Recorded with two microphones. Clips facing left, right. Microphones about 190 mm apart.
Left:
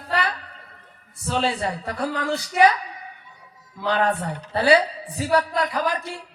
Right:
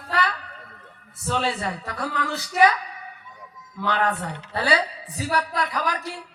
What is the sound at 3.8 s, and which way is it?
Speech, 30° left (ahead or behind).